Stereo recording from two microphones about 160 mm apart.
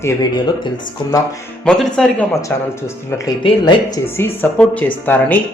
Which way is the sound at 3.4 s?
30° left (ahead or behind).